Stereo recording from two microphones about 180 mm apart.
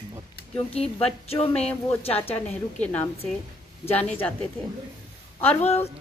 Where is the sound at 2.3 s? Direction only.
10° left (ahead or behind).